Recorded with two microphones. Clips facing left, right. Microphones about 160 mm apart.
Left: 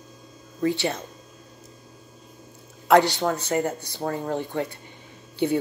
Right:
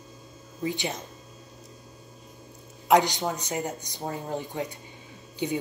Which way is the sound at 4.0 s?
70° left (ahead or behind).